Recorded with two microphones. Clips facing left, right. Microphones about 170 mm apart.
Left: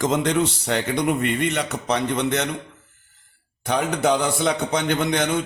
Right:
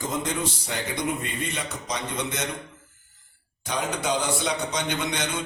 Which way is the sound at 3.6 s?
60° left (ahead or behind).